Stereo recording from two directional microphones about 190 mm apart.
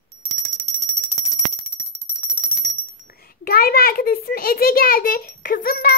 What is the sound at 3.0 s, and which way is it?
A child's voice, 55° left (ahead or behind).